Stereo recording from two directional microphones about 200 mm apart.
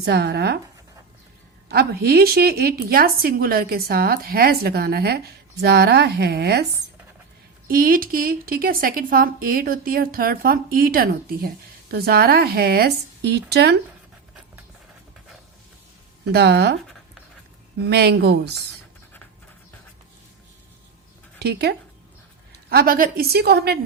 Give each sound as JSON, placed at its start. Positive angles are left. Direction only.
{"t": 0.0, "sound": "speech", "side_deg": -55}
{"t": 1.7, "sound": "a woman's voice", "side_deg": -50}
{"t": 7.7, "sound": "a woman's voice", "side_deg": -45}
{"t": 16.3, "sound": "speech", "side_deg": -55}
{"t": 17.8, "sound": "speech", "side_deg": -55}
{"t": 21.3, "sound": "a woman's voice", "side_deg": -55}